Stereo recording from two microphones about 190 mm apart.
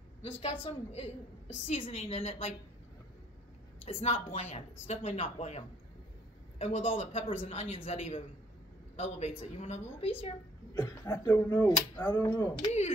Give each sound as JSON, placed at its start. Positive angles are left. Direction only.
{"t": 0.2, "sound": "a woman's voice", "side_deg": 30}
{"t": 3.8, "sound": "a woman's voice", "side_deg": 35}
{"t": 6.6, "sound": "a woman's voice", "side_deg": 35}
{"t": 10.8, "sound": "speech", "side_deg": 15}
{"t": 12.6, "sound": "a woman's voice", "side_deg": 35}